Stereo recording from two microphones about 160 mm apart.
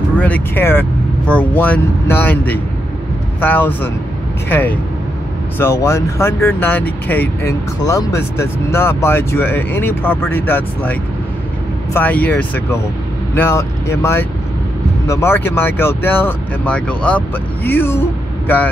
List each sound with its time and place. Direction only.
0.2 s speech: 10° left (ahead or behind)